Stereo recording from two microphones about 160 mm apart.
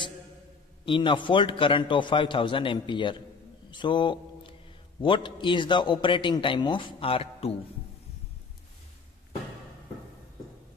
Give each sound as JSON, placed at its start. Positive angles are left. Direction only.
{"t": 0.8, "sound": "a man's voice", "side_deg": 30}
{"t": 3.7, "sound": "a sound", "side_deg": 30}
{"t": 5.0, "sound": "a man's voice", "side_deg": 30}